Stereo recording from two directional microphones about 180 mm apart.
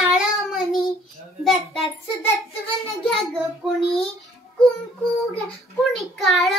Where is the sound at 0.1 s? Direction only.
Centre (ahead or behind).